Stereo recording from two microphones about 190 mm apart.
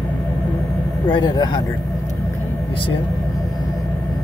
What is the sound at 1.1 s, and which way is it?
Speech, 25° left (ahead or behind).